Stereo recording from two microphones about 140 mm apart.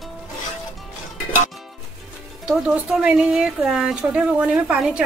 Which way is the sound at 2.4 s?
5° right (ahead or behind).